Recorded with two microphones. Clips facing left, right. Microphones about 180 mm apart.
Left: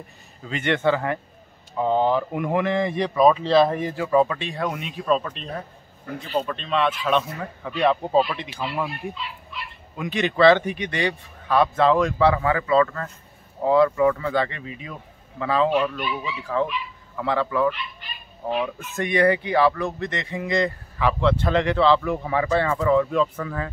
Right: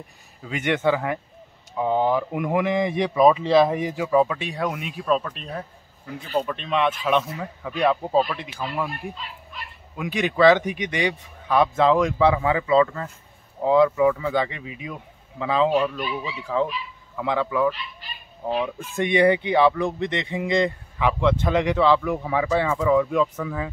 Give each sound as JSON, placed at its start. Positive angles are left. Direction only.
{"t": 0.4, "sound": "speech", "side_deg": -10}
{"t": 9.1, "sound": "speech", "side_deg": -45}
{"t": 9.9, "sound": "speech", "side_deg": -10}
{"t": 17.6, "sound": "speech", "side_deg": -35}
{"t": 18.9, "sound": "speech", "side_deg": -20}